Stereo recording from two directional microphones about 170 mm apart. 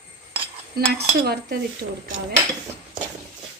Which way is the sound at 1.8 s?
60° right (ahead or behind).